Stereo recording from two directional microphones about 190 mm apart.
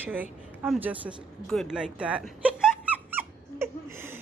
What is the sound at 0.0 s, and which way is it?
A woman's voice, 10° right (ahead or behind).